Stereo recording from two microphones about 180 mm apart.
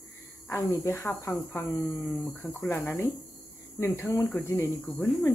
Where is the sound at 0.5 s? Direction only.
15° left (ahead or behind).